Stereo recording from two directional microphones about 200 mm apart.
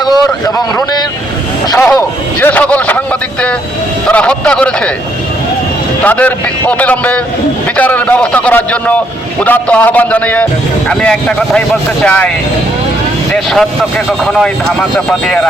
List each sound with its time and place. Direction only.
0.0 s vehicle: 20° left (ahead or behind)
1.9 s a man's voice: 10° left (ahead or behind)
6.0 s a man's voice: 5° left (ahead or behind)
13.3 s a man's voice: centre (ahead or behind)